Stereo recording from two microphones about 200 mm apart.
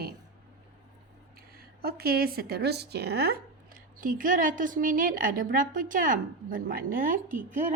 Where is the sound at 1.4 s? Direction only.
50° right (ahead or behind).